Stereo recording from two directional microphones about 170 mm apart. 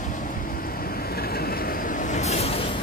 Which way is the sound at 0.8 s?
65° left (ahead or behind).